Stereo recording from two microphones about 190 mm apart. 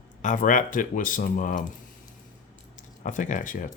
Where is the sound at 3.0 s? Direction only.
40° left (ahead or behind).